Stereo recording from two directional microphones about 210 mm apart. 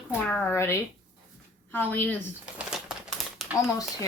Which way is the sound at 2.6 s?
5° right (ahead or behind).